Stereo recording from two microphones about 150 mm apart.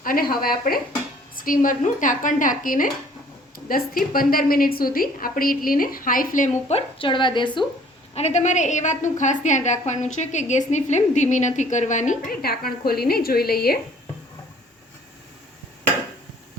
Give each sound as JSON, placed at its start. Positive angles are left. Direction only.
{"t": 0.0, "sound": "speech", "side_deg": 75}
{"t": 1.4, "sound": "a woman's voice", "side_deg": 65}
{"t": 8.1, "sound": "a woman's voice", "side_deg": 45}
{"t": 12.3, "sound": "a woman's voice", "side_deg": 90}